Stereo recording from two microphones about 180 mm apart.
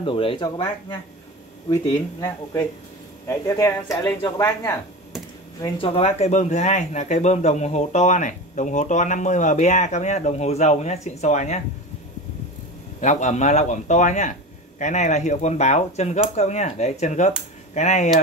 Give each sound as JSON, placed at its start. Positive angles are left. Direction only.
{"t": 0.0, "sound": "speech", "side_deg": 30}
{"t": 5.6, "sound": "speech", "side_deg": 30}
{"t": 13.0, "sound": "speech", "side_deg": 40}